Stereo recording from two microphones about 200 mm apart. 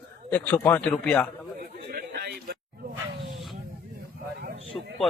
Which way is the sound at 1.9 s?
50° right (ahead or behind).